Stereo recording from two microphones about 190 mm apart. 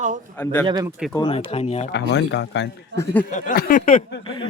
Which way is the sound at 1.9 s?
65° left (ahead or behind).